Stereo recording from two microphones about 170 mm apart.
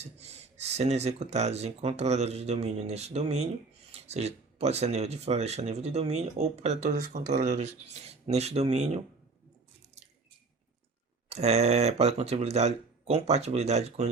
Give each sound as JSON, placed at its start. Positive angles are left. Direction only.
{"t": 0.0, "sound": "speech", "side_deg": -40}
{"t": 11.3, "sound": "speech", "side_deg": -40}